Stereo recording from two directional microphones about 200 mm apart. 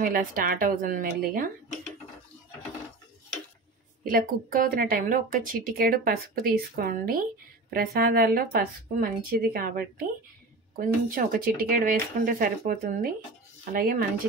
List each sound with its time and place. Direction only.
0.0 s speech: 45° right (ahead or behind)
4.0 s speech: 45° right (ahead or behind)